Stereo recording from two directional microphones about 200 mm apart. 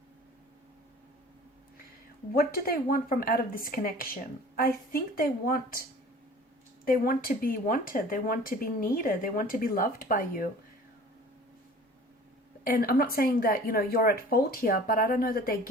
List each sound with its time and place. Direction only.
2.3 s speech: 45° left (ahead or behind)
6.8 s speech: 45° left (ahead or behind)
12.6 s speech: 45° left (ahead or behind)